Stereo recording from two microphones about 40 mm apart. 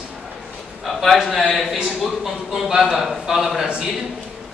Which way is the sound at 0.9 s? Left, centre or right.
Centre.